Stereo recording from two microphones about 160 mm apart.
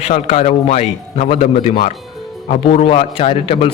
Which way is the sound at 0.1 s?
45° left (ahead or behind).